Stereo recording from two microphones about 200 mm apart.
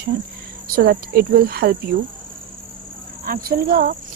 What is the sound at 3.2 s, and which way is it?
Cricket, 50° right (ahead or behind).